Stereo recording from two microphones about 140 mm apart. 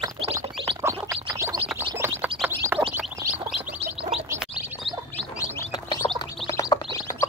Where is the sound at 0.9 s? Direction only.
20° right (ahead or behind).